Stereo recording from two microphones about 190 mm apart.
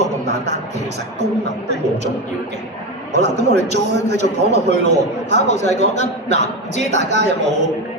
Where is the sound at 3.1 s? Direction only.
65° right (ahead or behind).